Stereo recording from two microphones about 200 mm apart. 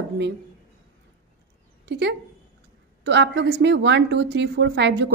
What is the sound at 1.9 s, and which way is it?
A woman's voice, 60° right (ahead or behind).